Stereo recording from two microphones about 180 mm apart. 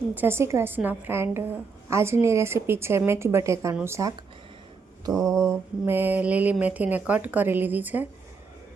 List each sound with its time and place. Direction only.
0.1 s speech: 10° right (ahead or behind)
5.0 s mantra: 20° right (ahead or behind)
5.4 s speech: 15° right (ahead or behind)